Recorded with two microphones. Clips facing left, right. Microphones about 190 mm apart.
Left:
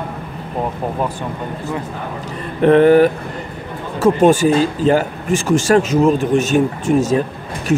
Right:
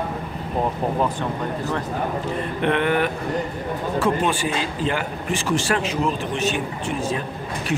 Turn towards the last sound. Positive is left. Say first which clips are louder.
# left 10 dB
turn(degrees=45)  # may be behind; listen again after turning